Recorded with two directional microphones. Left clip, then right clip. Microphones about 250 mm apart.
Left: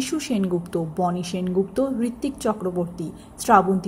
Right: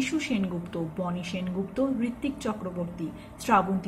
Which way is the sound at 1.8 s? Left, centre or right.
Left.